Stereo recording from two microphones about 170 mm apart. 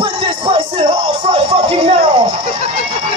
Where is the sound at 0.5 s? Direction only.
30° right (ahead or behind).